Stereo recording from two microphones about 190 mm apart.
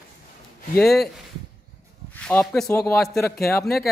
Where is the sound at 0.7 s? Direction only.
Centre (ahead or behind).